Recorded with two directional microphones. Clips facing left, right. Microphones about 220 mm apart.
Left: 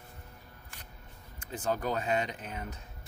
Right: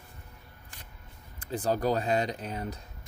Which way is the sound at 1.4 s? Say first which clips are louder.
Right 4 dB; 35° right (ahead or behind).